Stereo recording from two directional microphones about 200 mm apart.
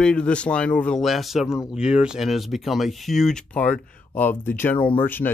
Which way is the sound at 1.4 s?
15° left (ahead or behind).